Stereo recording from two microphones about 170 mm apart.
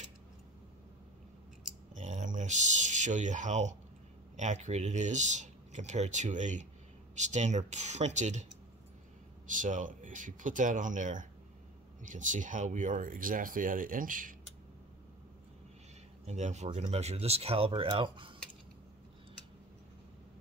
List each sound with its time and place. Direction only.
2.0 s speech: 45° right (ahead or behind)
9.5 s speech: 50° right (ahead or behind)
16.3 s speech: 40° right (ahead or behind)